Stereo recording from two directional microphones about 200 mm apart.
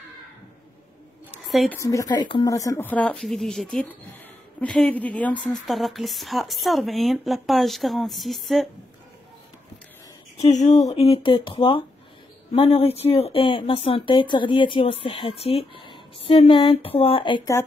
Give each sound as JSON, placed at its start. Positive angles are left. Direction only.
{"t": 1.3, "sound": "a sound", "side_deg": 0}
{"t": 1.8, "sound": "a woman's voice", "side_deg": 15}
{"t": 10.4, "sound": "speech", "side_deg": 35}